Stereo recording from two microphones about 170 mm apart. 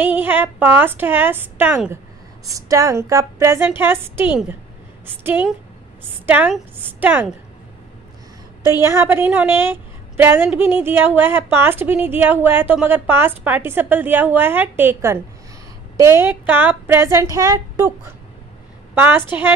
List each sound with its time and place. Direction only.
0.0 s a woman's voice: 10° right (ahead or behind)
8.8 s a woman's voice: 15° right (ahead or behind)